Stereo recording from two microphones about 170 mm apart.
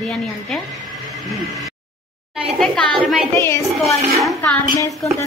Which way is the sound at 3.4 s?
15° left (ahead or behind).